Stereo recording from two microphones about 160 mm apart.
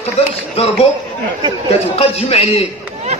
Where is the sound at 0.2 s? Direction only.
40° left (ahead or behind).